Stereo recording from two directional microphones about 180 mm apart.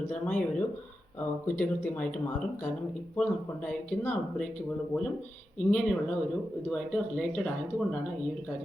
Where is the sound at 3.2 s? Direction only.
5° left (ahead or behind).